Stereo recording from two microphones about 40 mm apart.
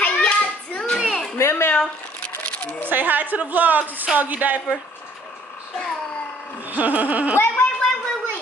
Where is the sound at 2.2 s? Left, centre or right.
Left.